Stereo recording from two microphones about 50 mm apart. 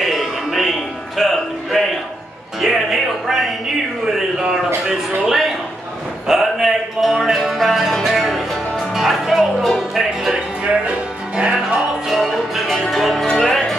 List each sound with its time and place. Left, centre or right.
0.0 s music: centre
4.8 s a sound: centre
6.2 s music: centre
10.6 s music: right
12.1 s music: centre